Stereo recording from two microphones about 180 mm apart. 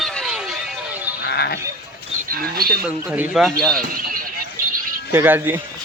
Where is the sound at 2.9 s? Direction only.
10° right (ahead or behind).